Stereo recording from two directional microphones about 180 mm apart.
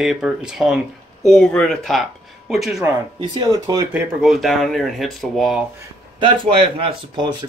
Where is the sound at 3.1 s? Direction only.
25° right (ahead or behind).